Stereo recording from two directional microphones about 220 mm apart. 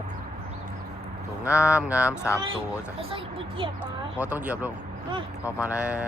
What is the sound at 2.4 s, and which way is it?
Speech, 25° right (ahead or behind).